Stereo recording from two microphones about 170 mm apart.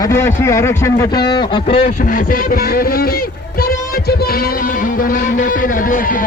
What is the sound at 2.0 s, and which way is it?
Speech, 55° left (ahead or behind).